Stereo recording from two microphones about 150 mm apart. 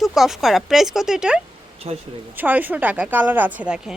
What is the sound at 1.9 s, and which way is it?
Speech, 40° right (ahead or behind).